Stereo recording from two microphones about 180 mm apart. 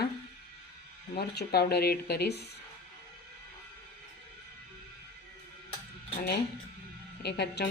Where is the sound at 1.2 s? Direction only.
60° left (ahead or behind).